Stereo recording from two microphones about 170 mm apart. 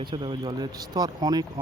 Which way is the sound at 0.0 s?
30° right (ahead or behind).